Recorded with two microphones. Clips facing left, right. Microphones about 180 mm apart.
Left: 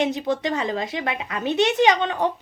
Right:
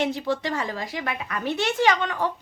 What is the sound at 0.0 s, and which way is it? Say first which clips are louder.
Speech: left 2 dB; 20° left (ahead or behind).